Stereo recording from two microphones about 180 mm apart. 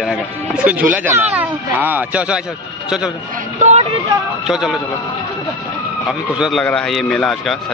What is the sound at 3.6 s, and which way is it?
Speech, 35° right (ahead or behind).